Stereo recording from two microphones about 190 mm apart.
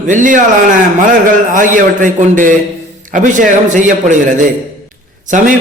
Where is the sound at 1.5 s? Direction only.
45° right (ahead or behind).